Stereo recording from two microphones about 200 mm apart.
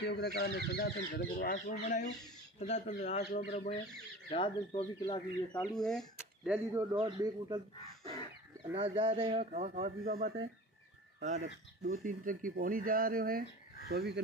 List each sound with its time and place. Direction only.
0.0 s speech: 55° left (ahead or behind); by 5.8 s 20° left (ahead or behind)
5.8 s speech: 5° left (ahead or behind)
6.5 s a man's voice: 15° right (ahead or behind)
8.7 s speech: 25° right (ahead or behind); by 14.2 s 55° right (ahead or behind)